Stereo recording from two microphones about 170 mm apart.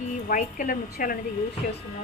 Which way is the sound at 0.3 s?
55° left (ahead or behind).